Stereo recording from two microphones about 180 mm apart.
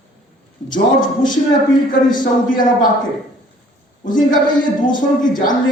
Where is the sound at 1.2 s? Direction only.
25° left (ahead or behind).